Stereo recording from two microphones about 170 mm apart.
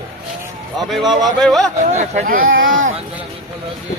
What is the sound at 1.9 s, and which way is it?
Speech, 45° right (ahead or behind).